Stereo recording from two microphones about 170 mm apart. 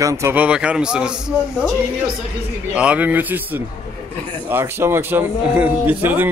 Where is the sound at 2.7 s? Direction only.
5° right (ahead or behind).